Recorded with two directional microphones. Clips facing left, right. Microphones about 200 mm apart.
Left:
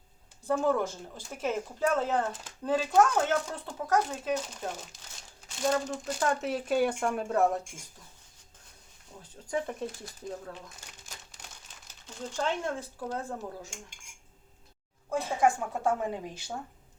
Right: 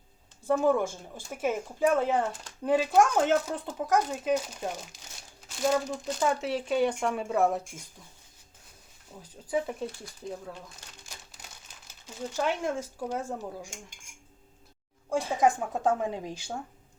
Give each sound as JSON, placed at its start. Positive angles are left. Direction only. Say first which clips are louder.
{"t": 0.4, "sound": "speech", "louder": "right 3 dB", "side_deg": -10}
{"t": 5.6, "sound": "speech", "louder": "right 2 dB", "side_deg": 0}
{"t": 9.5, "sound": "speech", "louder": "right 3 dB", "side_deg": -5}
{"t": 12.0, "sound": "speech", "louder": "right 2 dB", "side_deg": -10}
{"t": 15.1, "sound": "speech", "louder": "right 1 dB", "side_deg": -15}